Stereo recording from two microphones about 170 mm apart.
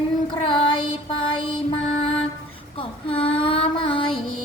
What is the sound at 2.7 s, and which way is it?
Child singing, 30° left (ahead or behind).